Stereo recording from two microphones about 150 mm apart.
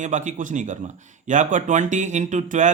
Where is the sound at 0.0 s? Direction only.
55° right (ahead or behind).